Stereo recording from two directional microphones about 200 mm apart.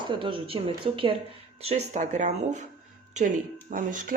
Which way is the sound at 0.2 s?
25° right (ahead or behind).